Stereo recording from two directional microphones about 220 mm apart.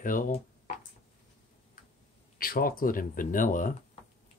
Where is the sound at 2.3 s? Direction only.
40° left (ahead or behind).